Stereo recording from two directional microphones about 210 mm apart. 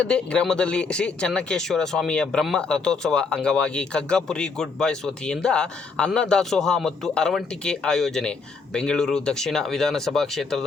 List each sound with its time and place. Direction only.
0.0 s speech: 5° left (ahead or behind)